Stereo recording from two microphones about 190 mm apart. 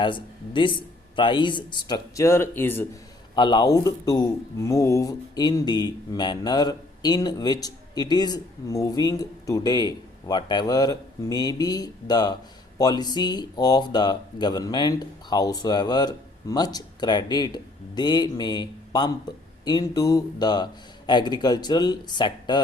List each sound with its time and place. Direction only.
0.0 s speech: 25° left (ahead or behind)
3.3 s speech: 25° left (ahead or behind)